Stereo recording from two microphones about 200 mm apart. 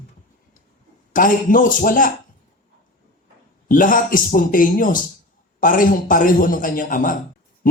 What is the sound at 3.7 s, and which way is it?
A man's voice, 45° left (ahead or behind).